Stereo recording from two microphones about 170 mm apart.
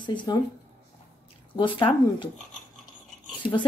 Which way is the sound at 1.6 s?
30° left (ahead or behind).